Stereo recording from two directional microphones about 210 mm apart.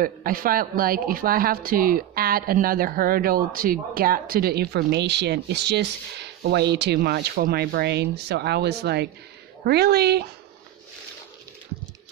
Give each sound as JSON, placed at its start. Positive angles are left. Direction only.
{"t": 0.0, "sound": "speech", "side_deg": -45}